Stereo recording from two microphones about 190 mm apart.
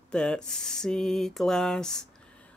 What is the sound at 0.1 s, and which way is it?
Speech, 5° left (ahead or behind).